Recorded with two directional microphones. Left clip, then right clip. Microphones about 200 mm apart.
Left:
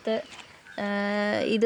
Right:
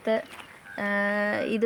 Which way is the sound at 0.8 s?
40° left (ahead or behind).